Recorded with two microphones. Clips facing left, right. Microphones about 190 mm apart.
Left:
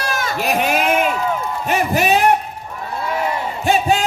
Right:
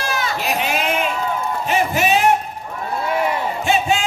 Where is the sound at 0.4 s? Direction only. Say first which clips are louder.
Left 7 dB; 45° left (ahead or behind).